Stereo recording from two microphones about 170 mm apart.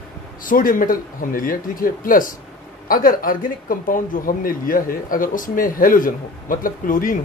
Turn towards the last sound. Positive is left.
turn(degrees=55)  # may be behind; listen again after turning